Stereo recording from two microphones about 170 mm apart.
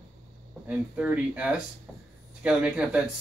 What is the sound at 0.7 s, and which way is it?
Speech, 5° right (ahead or behind).